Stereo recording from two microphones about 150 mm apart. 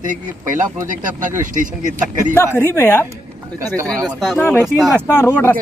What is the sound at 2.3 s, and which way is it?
Speech, 15° left (ahead or behind).